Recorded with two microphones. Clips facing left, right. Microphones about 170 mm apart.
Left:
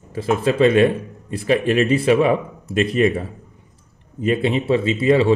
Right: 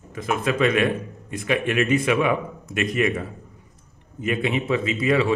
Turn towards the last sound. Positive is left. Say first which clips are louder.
# left 5 dB
turn(degrees=30)  # may be behind; listen again after turning